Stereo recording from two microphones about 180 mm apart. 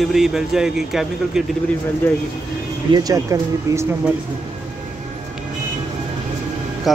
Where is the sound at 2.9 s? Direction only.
20° right (ahead or behind).